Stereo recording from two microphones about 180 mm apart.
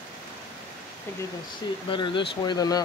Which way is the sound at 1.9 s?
25° left (ahead or behind).